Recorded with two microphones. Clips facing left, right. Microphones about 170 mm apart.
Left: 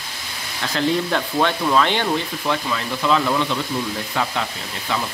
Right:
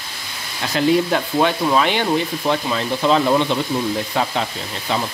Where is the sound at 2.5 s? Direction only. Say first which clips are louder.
Right 2 dB; 30° right (ahead or behind).